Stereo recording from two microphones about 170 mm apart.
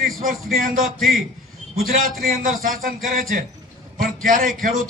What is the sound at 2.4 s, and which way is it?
A man's voice, 55° right (ahead or behind).